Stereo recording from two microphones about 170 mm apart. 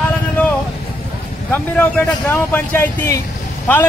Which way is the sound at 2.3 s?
10° left (ahead or behind).